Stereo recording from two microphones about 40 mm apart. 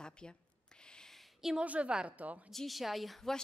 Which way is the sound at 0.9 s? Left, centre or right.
Centre.